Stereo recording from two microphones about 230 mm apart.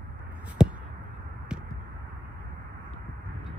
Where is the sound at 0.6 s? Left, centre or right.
Centre.